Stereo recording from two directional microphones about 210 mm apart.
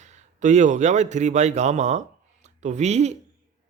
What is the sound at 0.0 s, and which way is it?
A man's voice, 35° right (ahead or behind).